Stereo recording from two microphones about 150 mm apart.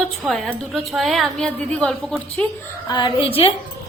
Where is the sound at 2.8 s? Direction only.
30° left (ahead or behind).